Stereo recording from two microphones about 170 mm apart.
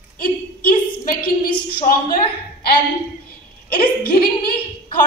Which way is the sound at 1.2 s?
60° left (ahead or behind).